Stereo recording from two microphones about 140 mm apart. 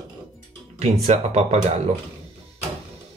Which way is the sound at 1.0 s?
50° right (ahead or behind).